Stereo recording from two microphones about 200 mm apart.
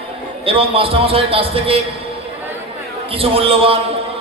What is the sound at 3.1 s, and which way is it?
Speech, 30° right (ahead or behind).